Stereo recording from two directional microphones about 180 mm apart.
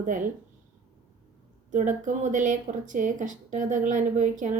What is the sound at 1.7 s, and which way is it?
A woman's voice, 45° right (ahead or behind).